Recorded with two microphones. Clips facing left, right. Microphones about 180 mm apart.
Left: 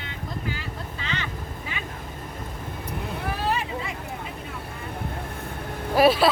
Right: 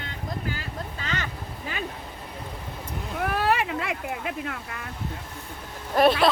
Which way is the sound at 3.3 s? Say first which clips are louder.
Right 4 dB; 65° right (ahead or behind).